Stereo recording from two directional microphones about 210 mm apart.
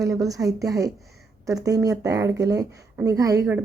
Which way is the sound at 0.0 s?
15° right (ahead or behind).